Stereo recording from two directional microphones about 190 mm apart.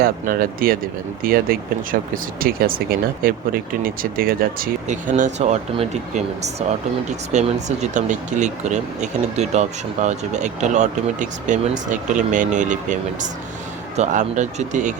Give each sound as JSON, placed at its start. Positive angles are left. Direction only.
{"t": 0.0, "sound": "speech", "side_deg": -50}